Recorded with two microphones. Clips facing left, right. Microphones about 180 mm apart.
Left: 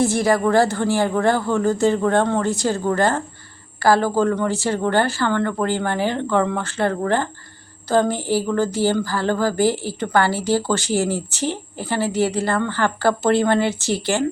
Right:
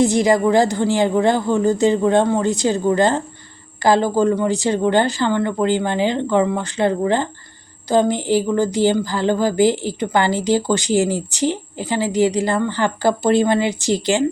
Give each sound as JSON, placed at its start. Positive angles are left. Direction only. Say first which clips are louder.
{"t": 0.0, "sound": "a woman's voice", "louder": "right 3 dB", "side_deg": -15}